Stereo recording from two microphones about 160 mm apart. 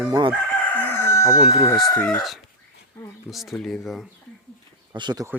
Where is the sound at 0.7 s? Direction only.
15° left (ahead or behind).